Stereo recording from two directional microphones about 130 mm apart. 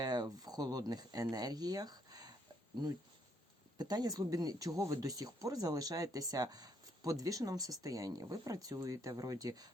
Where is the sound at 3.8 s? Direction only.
30° right (ahead or behind).